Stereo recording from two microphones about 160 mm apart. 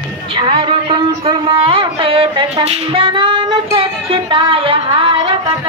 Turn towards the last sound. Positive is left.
turn(degrees=-30)  # may be behind; listen again after turning